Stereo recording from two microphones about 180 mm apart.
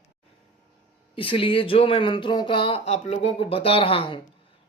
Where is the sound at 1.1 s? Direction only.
30° left (ahead or behind).